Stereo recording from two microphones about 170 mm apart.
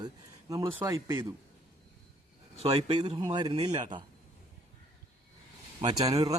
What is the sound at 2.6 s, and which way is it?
A man's voice, 25° right (ahead or behind).